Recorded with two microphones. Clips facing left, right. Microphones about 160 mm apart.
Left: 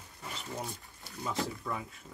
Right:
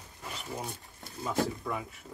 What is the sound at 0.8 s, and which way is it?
Speech, 20° right (ahead or behind).